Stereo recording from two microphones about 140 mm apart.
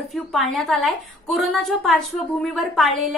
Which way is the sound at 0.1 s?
Centre (ahead or behind).